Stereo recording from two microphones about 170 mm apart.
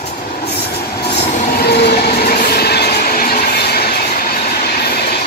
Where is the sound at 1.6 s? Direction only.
75° left (ahead or behind).